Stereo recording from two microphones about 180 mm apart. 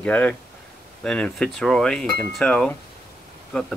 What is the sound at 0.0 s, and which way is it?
Speech, 10° left (ahead or behind).